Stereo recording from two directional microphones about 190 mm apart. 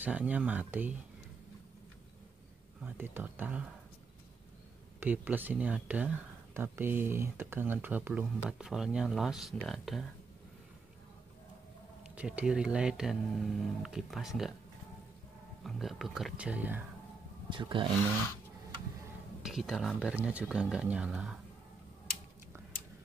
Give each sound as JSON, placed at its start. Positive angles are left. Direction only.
{"t": 0.0, "sound": "speech", "side_deg": -10}
{"t": 2.8, "sound": "speech", "side_deg": -10}
{"t": 5.0, "sound": "speech", "side_deg": -10}
{"t": 12.2, "sound": "speech", "side_deg": -5}
{"t": 15.6, "sound": "speech", "side_deg": 0}
{"t": 17.5, "sound": "speech", "side_deg": -25}
{"t": 19.4, "sound": "speech", "side_deg": 0}